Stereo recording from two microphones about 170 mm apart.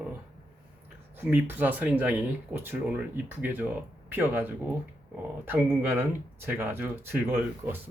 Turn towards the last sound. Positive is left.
turn(degrees=-15)  # may be behind; listen again after turning